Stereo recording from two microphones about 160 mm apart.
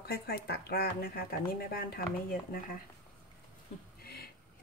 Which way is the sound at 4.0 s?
75° left (ahead or behind).